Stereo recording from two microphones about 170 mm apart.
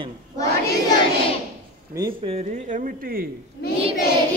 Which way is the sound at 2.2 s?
40° right (ahead or behind).